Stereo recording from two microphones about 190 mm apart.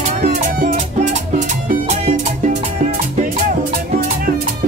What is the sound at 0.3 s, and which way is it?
Music, 45° right (ahead or behind).